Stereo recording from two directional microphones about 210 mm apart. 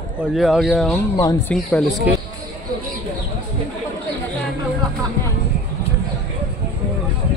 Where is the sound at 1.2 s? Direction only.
20° left (ahead or behind).